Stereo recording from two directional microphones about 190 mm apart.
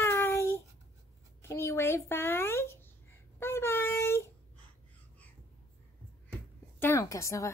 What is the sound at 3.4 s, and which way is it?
Child singing, 10° left (ahead or behind).